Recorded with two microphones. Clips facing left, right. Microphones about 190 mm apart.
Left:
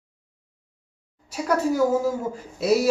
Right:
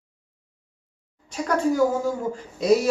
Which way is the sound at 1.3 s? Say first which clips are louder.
Even; 5° left (ahead or behind).